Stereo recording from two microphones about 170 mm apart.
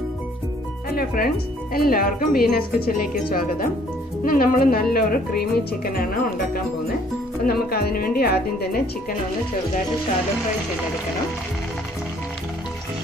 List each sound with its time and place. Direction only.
0.9 s speech: 60° left (ahead or behind)
7.4 s speech: 65° left (ahead or behind)